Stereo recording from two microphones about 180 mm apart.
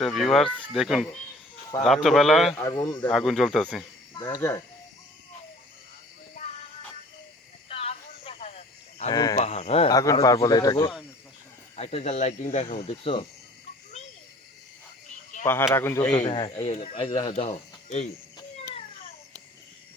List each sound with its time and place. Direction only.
0.0 s a man's voice: centre (ahead or behind)
2.6 s speech: 15° left (ahead or behind)
3.1 s a man's voice: centre (ahead or behind)
4.1 s speech: 20° left (ahead or behind)
7.7 s a sound: 30° left (ahead or behind)
9.1 s speech: 20° left (ahead or behind)
9.4 s speech: 35° left (ahead or behind)
9.9 s speech: 20° left (ahead or behind)
11.8 s speech: 35° left (ahead or behind)
15.4 s speech: 15° left (ahead or behind)
16.1 s speech: 25° left (ahead or behind)